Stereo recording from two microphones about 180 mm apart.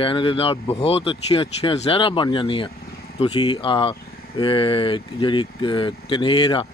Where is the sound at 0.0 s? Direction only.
30° left (ahead or behind).